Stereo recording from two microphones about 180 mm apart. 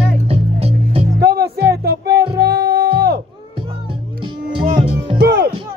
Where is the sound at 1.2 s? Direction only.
60° right (ahead or behind).